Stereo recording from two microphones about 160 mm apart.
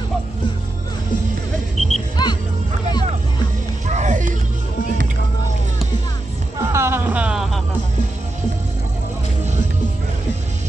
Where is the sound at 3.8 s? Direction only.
50° right (ahead or behind).